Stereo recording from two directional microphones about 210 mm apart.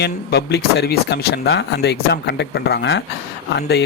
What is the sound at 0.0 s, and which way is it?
Speech, 50° left (ahead or behind).